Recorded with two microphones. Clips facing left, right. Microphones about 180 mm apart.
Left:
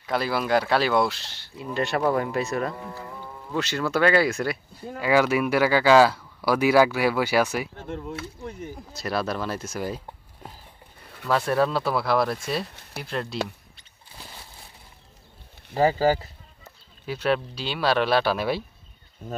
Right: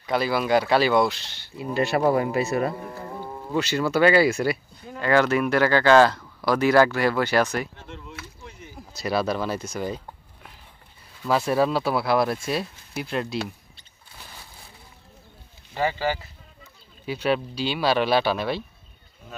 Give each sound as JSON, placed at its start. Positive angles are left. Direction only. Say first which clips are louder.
{"t": 0.0, "sound": "speech", "louder": "right 2 dB", "side_deg": 0}
{"t": 7.7, "sound": "speech", "louder": "left 8 dB", "side_deg": 45}
{"t": 8.9, "sound": "speech", "louder": "right 3 dB", "side_deg": 0}
{"t": 11.2, "sound": "speech", "louder": "right 1 dB", "side_deg": -5}
{"t": 15.7, "sound": "speech", "louder": "left 5 dB", "side_deg": 40}
{"t": 17.0, "sound": "speech", "louder": "even", "side_deg": 0}